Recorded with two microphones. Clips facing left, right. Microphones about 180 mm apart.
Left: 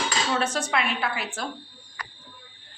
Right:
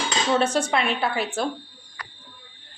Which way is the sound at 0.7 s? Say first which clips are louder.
Right 3 dB; 30° right (ahead or behind).